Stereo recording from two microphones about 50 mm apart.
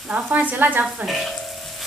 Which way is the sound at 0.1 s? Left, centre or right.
Right.